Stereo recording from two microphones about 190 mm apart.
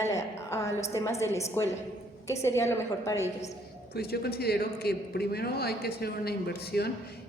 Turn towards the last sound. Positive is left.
turn(degrees=60)  # may be behind; listen again after turning